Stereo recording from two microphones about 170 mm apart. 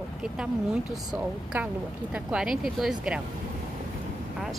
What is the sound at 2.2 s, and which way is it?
Speech, 5° right (ahead or behind).